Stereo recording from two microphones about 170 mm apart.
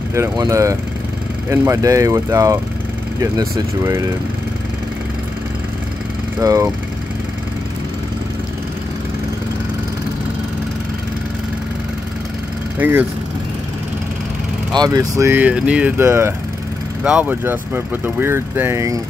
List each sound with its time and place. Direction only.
0.1 s speech: 20° right (ahead or behind)
6.4 s speech: 20° right (ahead or behind)
12.7 s speech: 10° right (ahead or behind)
14.8 s speech: 20° right (ahead or behind)